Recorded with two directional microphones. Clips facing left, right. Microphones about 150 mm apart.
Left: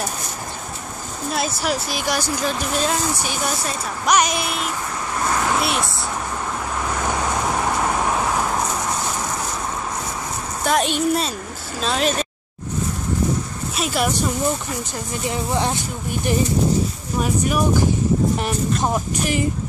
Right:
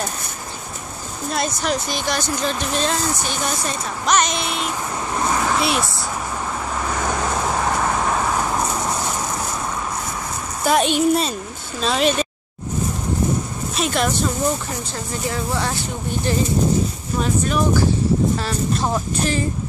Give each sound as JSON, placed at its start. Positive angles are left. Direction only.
{"t": 1.3, "sound": "speech", "side_deg": 5}
{"t": 5.5, "sound": "vehicle", "side_deg": 0}
{"t": 10.6, "sound": "a woman's voice", "side_deg": 0}
{"t": 13.7, "sound": "a sound", "side_deg": 5}
{"t": 15.2, "sound": "speech", "side_deg": 20}